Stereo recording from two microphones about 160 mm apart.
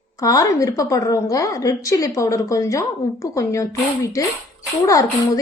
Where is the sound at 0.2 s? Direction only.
20° left (ahead or behind).